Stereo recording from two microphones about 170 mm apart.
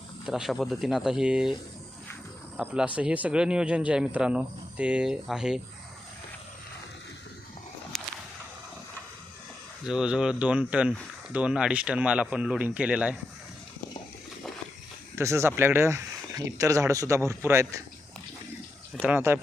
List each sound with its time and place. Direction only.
0.3 s speech: centre (ahead or behind)
2.6 s speech: 10° right (ahead or behind)
9.8 s speech: 5° right (ahead or behind)
15.1 s speech: 15° right (ahead or behind)
19.0 s speech: 10° right (ahead or behind)